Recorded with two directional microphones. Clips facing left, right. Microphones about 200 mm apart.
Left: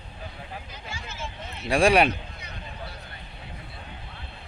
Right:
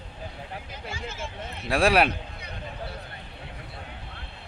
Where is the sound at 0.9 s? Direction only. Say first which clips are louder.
Right 2 dB; 50° right (ahead or behind).